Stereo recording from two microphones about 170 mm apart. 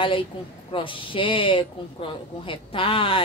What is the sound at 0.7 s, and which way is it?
Speech, 30° left (ahead or behind).